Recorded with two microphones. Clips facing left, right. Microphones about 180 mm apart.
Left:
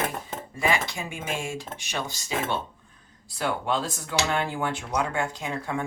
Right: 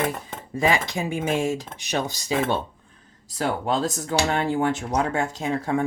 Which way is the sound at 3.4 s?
40° right (ahead or behind).